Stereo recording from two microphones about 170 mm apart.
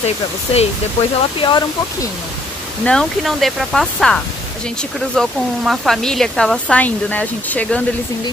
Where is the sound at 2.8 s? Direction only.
Centre (ahead or behind).